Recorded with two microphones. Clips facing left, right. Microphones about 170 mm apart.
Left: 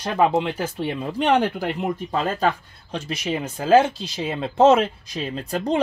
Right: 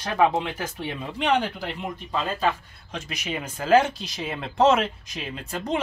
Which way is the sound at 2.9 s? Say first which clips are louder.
Left 6 dB; 30° left (ahead or behind).